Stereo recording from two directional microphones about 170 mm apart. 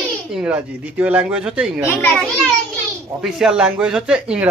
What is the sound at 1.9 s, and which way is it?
Speech, 10° left (ahead or behind).